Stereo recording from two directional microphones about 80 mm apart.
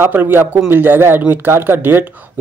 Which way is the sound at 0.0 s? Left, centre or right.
Right.